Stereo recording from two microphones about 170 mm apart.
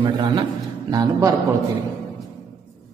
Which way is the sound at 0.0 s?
30° right (ahead or behind).